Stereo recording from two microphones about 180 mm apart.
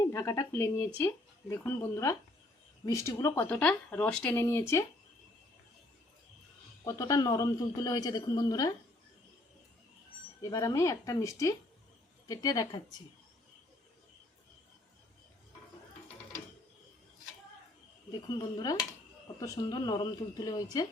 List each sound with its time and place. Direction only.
0.1 s speech: 15° left (ahead or behind)
6.8 s a man's voice: 20° left (ahead or behind)
10.4 s a man's voice: 20° left (ahead or behind)
18.3 s a man's voice: 25° left (ahead or behind)